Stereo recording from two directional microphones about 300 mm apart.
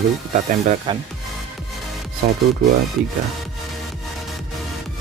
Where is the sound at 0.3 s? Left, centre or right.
Right.